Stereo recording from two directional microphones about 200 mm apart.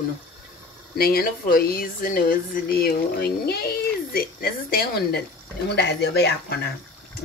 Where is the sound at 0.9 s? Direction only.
50° left (ahead or behind).